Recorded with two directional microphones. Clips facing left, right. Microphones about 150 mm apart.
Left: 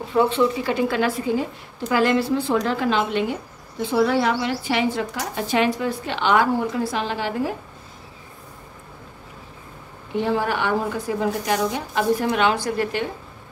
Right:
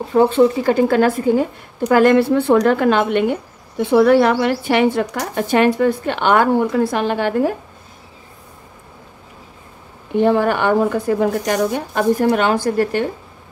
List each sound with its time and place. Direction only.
0.1 s a woman's voice: 45° right (ahead or behind)
10.1 s speech: 55° right (ahead or behind)